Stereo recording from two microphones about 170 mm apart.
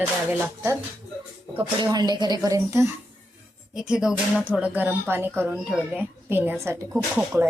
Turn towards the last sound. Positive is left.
turn(degrees=-10)  # may be behind; listen again after turning